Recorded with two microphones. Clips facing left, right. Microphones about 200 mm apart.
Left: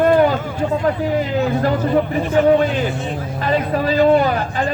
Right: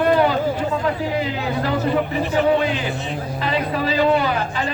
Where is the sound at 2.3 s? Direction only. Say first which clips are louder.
Left 5 dB; 50° left (ahead or behind).